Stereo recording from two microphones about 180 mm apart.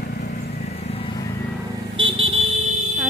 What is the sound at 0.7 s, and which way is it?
Horse, 35° left (ahead or behind).